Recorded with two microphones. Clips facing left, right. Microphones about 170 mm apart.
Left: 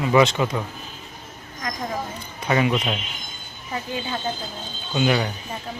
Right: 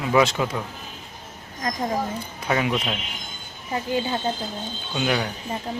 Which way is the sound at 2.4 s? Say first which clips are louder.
Left 3 dB; centre (ahead or behind).